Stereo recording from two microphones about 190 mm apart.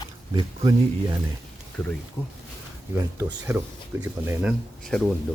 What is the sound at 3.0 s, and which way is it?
Speech, 20° right (ahead or behind).